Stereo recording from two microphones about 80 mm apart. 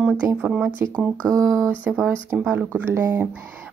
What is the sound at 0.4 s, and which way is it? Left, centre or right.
Speech, centre.